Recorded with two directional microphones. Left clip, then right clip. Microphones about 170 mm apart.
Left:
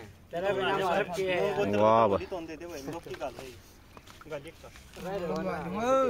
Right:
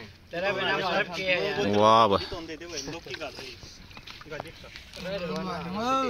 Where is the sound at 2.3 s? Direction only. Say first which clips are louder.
Right 2 dB; 50° left (ahead or behind).